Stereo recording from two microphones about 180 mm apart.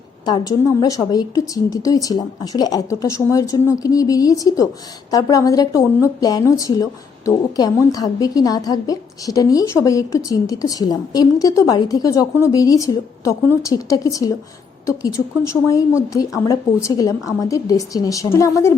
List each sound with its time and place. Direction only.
0.3 s a woman's voice: 20° left (ahead or behind)